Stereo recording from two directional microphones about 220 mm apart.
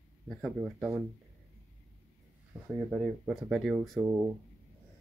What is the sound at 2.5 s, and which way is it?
Speech, 5° right (ahead or behind).